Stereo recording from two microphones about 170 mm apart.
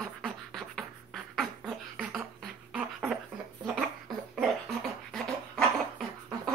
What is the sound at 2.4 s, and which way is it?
Beatboxing, 5° right (ahead or behind).